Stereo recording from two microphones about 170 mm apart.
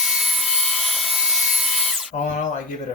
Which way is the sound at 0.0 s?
Centre (ahead or behind).